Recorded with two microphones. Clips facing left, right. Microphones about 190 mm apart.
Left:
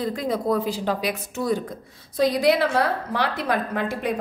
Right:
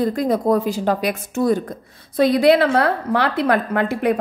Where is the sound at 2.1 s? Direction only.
60° right (ahead or behind).